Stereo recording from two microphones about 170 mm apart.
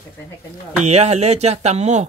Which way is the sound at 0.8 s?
40° right (ahead or behind).